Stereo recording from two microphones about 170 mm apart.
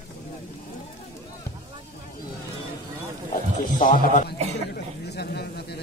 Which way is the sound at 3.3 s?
50° left (ahead or behind).